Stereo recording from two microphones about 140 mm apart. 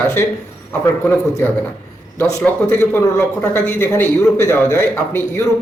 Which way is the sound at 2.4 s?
15° left (ahead or behind).